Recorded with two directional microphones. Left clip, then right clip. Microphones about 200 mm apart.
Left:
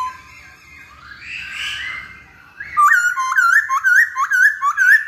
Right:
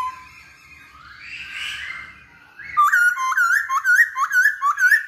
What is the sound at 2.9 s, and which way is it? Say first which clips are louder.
Music: left 2 dB; 5° left (ahead or behind).